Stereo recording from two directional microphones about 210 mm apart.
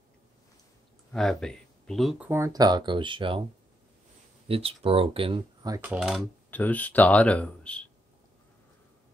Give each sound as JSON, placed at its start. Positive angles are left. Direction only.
{"t": 1.1, "sound": "speech", "side_deg": 0}
{"t": 4.5, "sound": "speech", "side_deg": -25}
{"t": 6.5, "sound": "speech", "side_deg": 10}